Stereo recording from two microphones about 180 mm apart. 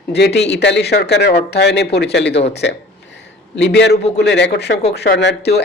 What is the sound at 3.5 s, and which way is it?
A man's voice, 85° left.